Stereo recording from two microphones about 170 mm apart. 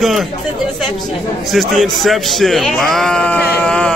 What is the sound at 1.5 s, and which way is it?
A man's voice, centre (ahead or behind).